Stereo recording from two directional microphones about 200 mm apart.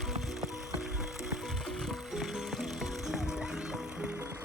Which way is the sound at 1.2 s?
Centre (ahead or behind).